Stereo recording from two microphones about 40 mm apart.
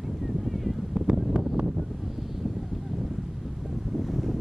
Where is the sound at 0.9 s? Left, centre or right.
Centre.